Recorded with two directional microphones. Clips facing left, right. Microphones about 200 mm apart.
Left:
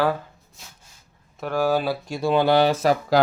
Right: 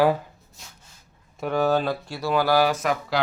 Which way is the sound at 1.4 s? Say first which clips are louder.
Even; 5° left (ahead or behind).